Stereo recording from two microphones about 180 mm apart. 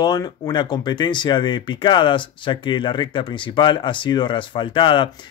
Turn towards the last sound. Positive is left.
turn(degrees=25)  # may be behind; listen again after turning